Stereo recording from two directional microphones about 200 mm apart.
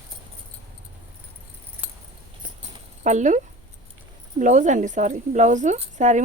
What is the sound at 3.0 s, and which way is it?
A woman's voice, 35° right (ahead or behind).